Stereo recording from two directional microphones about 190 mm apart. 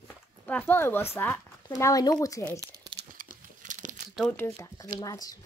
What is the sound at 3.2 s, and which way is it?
Crumpling, 45° right (ahead or behind).